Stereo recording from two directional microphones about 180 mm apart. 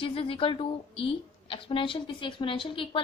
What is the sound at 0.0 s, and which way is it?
A woman's voice, 30° left (ahead or behind).